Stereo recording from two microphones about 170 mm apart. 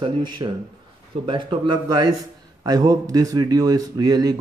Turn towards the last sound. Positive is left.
turn(degrees=-25)  # may be behind; listen again after turning